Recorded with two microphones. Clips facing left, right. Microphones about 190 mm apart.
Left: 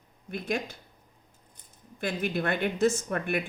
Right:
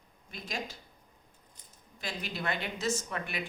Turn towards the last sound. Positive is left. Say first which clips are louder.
# left 7 dB
turn(degrees=55)  # may be behind; listen again after turning